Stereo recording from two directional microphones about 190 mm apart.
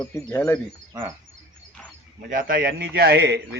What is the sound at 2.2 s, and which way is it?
A man's voice, 45° right (ahead or behind).